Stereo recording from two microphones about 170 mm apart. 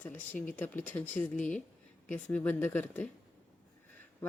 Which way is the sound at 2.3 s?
10° left (ahead or behind).